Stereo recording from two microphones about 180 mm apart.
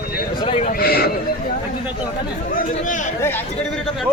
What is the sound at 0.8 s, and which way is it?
Horse, 60° left (ahead or behind).